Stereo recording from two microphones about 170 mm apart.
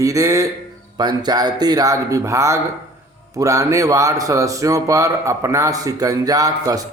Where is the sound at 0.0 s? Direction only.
20° right (ahead or behind).